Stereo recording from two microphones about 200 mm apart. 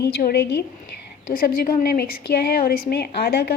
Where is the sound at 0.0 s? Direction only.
50° left (ahead or behind).